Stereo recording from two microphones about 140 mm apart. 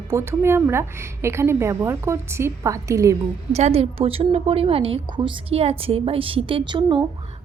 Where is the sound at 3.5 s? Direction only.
50° right (ahead or behind).